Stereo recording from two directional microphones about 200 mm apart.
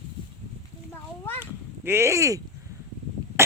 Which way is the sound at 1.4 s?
10° right (ahead or behind).